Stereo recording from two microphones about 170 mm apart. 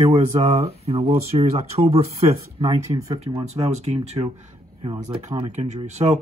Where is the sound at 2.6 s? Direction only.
25° right (ahead or behind).